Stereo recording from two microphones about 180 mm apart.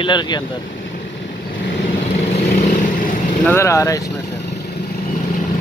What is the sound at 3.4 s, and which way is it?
Speech, 15° left (ahead or behind).